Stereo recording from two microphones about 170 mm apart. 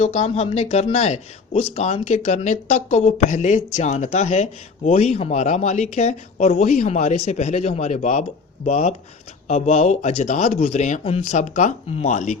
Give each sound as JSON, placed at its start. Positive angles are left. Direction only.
{"t": 0.0, "sound": "speech", "side_deg": 40}